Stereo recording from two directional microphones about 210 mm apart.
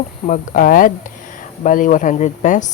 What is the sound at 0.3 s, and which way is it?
Speech, 40° left (ahead or behind).